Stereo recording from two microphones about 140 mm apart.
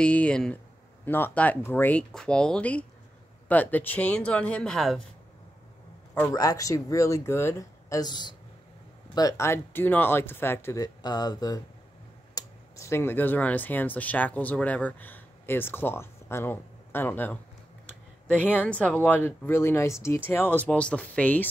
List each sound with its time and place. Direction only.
0.0 s speech: 10° left (ahead or behind)
6.3 s speech: 25° left (ahead or behind)
18.5 s speech: 10° left (ahead or behind)